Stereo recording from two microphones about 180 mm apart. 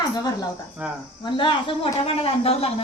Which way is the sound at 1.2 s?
25° left (ahead or behind).